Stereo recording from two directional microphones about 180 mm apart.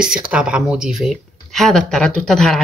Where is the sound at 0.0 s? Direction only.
5° right (ahead or behind).